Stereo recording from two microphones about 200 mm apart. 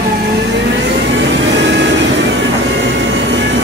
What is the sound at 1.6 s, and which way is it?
Vehicle, 65° right (ahead or behind).